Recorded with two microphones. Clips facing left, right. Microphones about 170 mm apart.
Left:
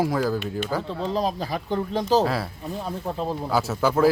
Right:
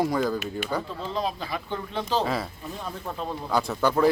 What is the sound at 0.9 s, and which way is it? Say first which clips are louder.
Speech: left 4 dB; 35° left (ahead or behind).